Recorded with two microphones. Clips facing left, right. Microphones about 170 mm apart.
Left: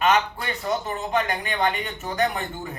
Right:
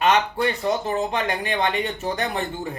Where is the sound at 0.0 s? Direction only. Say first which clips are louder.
Right 2 dB; 35° right (ahead or behind).